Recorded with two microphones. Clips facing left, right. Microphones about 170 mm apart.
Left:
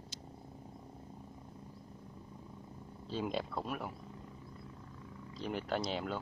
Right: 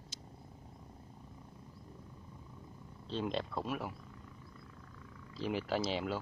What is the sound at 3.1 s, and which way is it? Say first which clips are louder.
Speech: even; 5° left (ahead or behind).